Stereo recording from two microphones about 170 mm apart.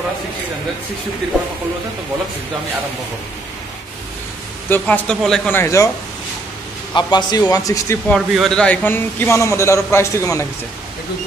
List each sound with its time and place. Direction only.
4.6 s a man's voice: 10° left (ahead or behind)
6.9 s a man's voice: 25° left (ahead or behind)
8.1 s a man's voice: 5° left (ahead or behind)